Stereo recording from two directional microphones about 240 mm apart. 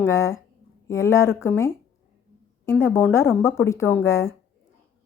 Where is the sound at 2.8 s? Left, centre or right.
Centre.